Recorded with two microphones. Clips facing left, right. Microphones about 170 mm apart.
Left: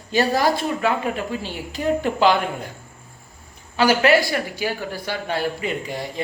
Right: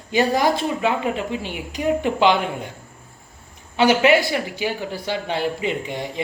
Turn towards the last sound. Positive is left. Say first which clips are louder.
# right 1 dB
turn(degrees=-20)  # may be behind; listen again after turning